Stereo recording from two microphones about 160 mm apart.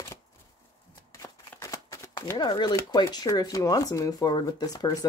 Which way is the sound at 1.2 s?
20° left (ahead or behind).